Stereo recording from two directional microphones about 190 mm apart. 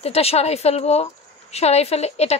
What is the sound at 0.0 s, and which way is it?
A woman's voice, 30° left (ahead or behind).